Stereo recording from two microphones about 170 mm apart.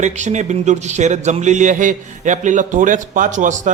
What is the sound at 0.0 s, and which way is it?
Speech, 45° right (ahead or behind).